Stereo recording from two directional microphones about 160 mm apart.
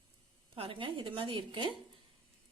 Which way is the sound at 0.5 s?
35° right (ahead or behind).